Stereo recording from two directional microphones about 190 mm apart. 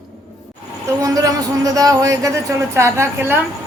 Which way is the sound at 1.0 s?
20° right (ahead or behind).